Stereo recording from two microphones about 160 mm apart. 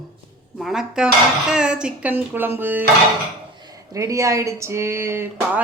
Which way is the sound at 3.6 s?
20° right (ahead or behind).